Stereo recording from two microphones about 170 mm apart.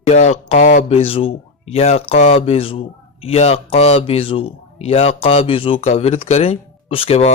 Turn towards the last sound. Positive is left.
turn(degrees=35)  # may be behind; listen again after turning